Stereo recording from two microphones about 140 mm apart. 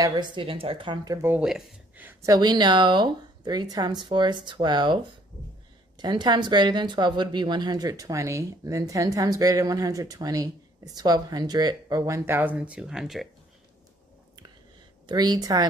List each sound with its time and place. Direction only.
0.0 s speech: 30° right (ahead or behind)
1.1 s speech: 15° right (ahead or behind)
1.4 s speech: 5° right (ahead or behind)
2.0 s speech: 25° right (ahead or behind); by 13.3 s centre (ahead or behind)
15.0 s speech: 30° right (ahead or behind)